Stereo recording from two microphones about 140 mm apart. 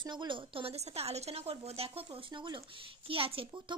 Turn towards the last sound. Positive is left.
turn(degrees=-40)  # may be behind; listen again after turning